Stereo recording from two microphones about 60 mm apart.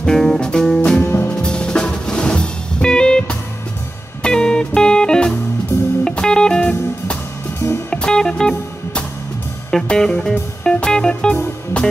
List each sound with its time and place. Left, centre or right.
0.0 s music: centre
1.0 s music: left
1.4 s music: centre
5.7 s music: left
6.0 s music: centre
7.9 s music: centre